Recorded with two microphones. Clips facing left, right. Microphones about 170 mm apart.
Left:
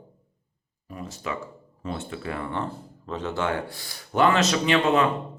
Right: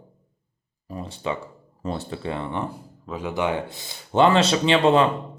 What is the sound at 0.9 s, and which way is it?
Speech, 30° right (ahead or behind).